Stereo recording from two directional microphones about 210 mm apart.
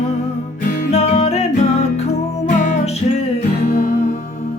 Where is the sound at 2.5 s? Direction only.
35° left (ahead or behind).